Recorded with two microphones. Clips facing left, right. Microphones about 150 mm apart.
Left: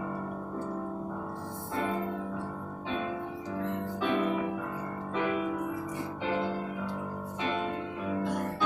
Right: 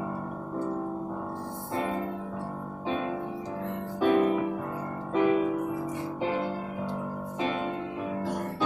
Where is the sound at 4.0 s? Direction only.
45° right (ahead or behind).